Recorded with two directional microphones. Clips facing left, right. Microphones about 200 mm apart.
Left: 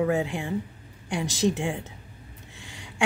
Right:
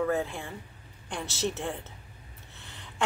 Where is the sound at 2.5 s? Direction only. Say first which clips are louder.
Left 3 dB; 10° left (ahead or behind).